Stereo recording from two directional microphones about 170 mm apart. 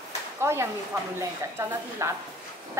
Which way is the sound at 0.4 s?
15° right (ahead or behind).